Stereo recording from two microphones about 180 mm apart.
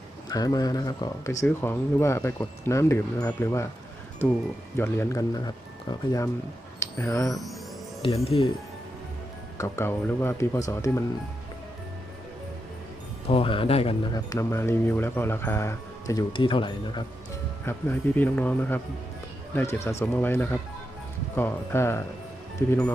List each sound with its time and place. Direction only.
0.3 s speech: 20° left (ahead or behind)
6.7 s speech: 15° left (ahead or behind)
8.0 s speech: 35° left (ahead or behind)
9.6 s speech: 15° left (ahead or behind)
13.2 s speech: 30° left (ahead or behind)
14.1 s speech: 15° left (ahead or behind)
17.7 s speech: 10° left (ahead or behind)